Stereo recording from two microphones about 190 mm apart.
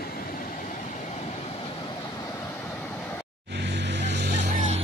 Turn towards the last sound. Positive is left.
turn(degrees=-40)  # may be behind; listen again after turning